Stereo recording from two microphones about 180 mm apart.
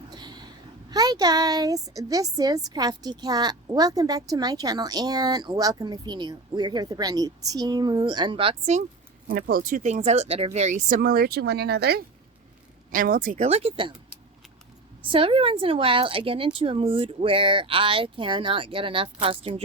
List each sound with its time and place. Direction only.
0.1 s a sound: 25° right (ahead or behind)
0.9 s a woman's voice: 20° right (ahead or behind)
9.2 s speech: 55° right (ahead or behind)
12.9 s speech: 50° right (ahead or behind); by 13.9 s 30° right (ahead or behind)
15.0 s a woman's voice: 30° right (ahead or behind)